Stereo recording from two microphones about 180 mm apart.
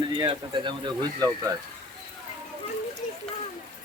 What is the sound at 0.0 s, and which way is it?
Speech, 25° right (ahead or behind).